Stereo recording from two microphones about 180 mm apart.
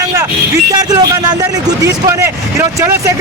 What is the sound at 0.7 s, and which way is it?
Speech, 20° right (ahead or behind).